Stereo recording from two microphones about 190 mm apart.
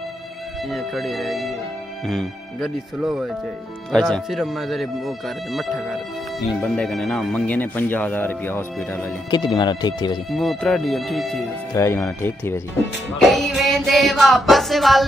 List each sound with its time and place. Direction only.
0.7 s speech: centre (ahead or behind)
9.3 s speech: 20° left (ahead or behind)
10.3 s speech: centre (ahead or behind)
11.7 s speech: 15° left (ahead or behind)
13.2 s speech: centre (ahead or behind)